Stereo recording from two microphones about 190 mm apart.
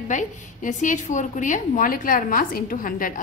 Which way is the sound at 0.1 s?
40° left (ahead or behind).